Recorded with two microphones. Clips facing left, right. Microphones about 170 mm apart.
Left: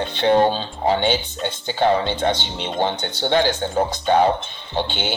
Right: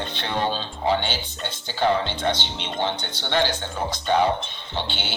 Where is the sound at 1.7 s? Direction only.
50° left (ahead or behind).